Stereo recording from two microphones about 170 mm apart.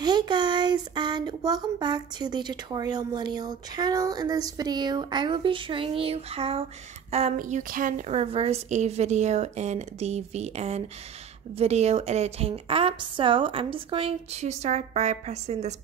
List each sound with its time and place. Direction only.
0.0 s speech: 25° right (ahead or behind)
7.3 s speech: 50° right (ahead or behind)
8.1 s a woman's voice: 35° right (ahead or behind)